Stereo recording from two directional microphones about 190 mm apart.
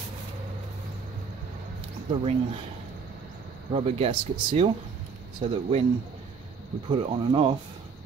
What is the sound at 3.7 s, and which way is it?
Speech, 30° right (ahead or behind).